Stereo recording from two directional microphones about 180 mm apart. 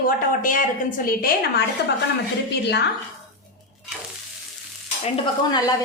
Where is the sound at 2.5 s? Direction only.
70° left (ahead or behind).